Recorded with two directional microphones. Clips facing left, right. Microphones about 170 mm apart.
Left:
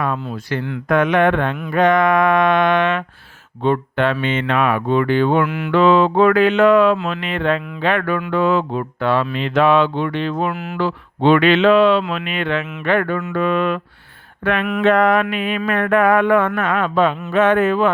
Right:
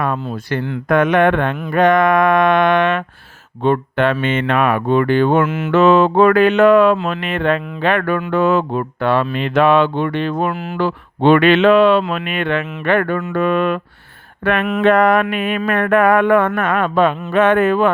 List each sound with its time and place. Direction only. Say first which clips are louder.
0.0 s speech: right 2 dB; 50° right (ahead or behind)
5.5 s mantra: right 3 dB; 25° right (ahead or behind)
5.7 s speech: right 2 dB; 50° right (ahead or behind)
6.9 s speech: right 2 dB; 40° right (ahead or behind)
7.2 s speech: right 2 dB; 50° right (ahead or behind)
13.1 s speech: right 2 dB; 40° right (ahead or behind)